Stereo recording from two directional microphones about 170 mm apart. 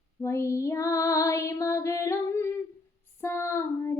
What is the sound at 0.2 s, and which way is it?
Music, 15° left (ahead or behind).